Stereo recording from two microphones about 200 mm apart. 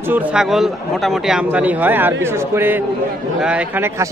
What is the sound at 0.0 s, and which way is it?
A man's voice, 10° right (ahead or behind).